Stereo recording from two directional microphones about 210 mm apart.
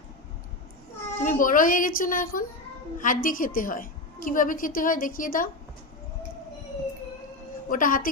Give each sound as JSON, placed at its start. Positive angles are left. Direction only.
{"t": 1.2, "sound": "a woman's voice", "side_deg": 35}
{"t": 7.7, "sound": "a woman's voice", "side_deg": 40}